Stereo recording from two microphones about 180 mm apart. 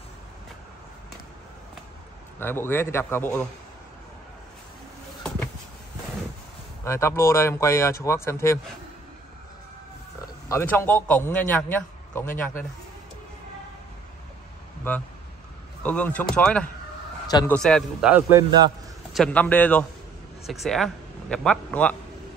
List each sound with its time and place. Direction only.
2.4 s a man's voice: 10° left (ahead or behind)
6.8 s a man's voice: 15° left (ahead or behind)
10.5 s a man's voice: 15° left (ahead or behind)
15.8 s a man's voice: 5° left (ahead or behind)
19.1 s a man's voice: 5° left (ahead or behind)